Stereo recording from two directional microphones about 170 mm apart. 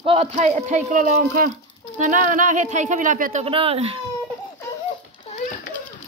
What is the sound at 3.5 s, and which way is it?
Speech, 35° right (ahead or behind).